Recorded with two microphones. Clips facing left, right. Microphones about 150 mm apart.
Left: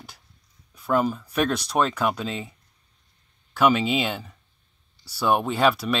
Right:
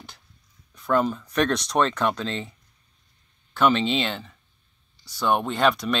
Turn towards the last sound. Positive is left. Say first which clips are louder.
# left 1 dB
turn(degrees=5)  # may be behind; listen again after turning